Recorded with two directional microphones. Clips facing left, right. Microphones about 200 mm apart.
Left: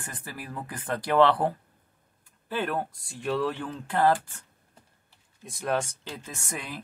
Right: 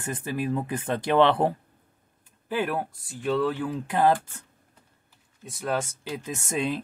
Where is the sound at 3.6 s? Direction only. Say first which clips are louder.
Even; 15° right (ahead or behind).